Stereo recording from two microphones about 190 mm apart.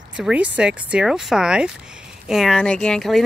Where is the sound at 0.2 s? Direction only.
5° right (ahead or behind).